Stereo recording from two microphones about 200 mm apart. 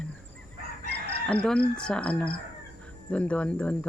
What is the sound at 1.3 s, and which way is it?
A woman's voice, 5° left (ahead or behind).